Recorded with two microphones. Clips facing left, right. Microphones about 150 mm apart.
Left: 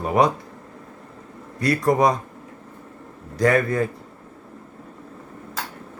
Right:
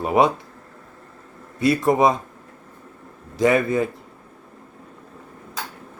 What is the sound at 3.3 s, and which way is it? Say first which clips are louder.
Speech: right 1 dB; 20° right (ahead or behind).